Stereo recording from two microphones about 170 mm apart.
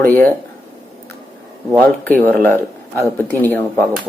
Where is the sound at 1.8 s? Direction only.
10° left (ahead or behind).